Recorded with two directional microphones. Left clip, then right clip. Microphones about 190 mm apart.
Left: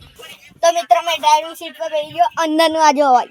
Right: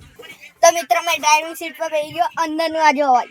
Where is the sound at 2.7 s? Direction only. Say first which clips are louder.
Even; 10° left (ahead or behind).